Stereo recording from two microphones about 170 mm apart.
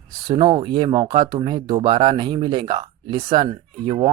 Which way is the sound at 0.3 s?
25° right (ahead or behind).